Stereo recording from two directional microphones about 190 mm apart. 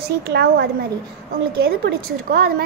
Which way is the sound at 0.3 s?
60° right (ahead or behind).